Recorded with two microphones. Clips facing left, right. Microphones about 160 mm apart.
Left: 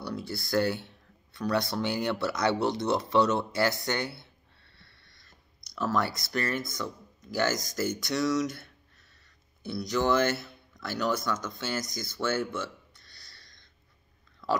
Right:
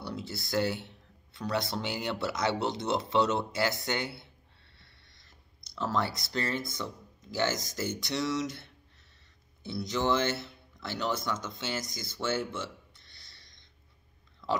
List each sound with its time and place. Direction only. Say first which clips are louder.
0.0 s speech: left 3 dB; 25° right (ahead or behind)
12.5 s hiccup: left 3 dB; 25° right (ahead or behind)